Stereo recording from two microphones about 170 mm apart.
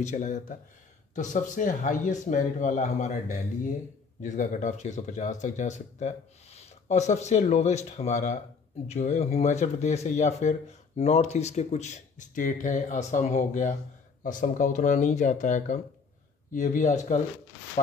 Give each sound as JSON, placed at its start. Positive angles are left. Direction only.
{"t": 0.0, "sound": "speech", "side_deg": 45}